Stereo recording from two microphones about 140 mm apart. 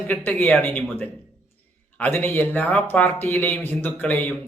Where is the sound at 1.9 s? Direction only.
15° left (ahead or behind).